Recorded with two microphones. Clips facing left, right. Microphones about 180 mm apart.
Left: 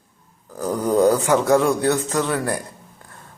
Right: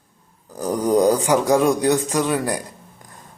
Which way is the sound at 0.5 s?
20° right (ahead or behind).